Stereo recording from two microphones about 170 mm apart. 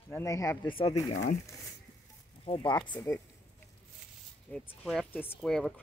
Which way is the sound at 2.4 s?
30° left (ahead or behind).